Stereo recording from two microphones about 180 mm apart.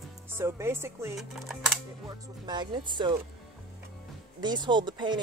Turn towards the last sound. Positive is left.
turn(degrees=-25)  # may be behind; listen again after turning